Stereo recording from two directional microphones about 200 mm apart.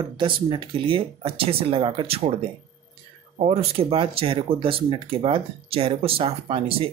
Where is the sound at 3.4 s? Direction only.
30° right (ahead or behind).